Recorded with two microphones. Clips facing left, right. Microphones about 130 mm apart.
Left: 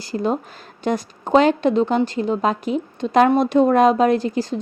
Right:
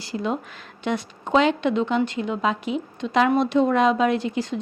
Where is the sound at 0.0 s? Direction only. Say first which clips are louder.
Left 4 dB; 40° left (ahead or behind).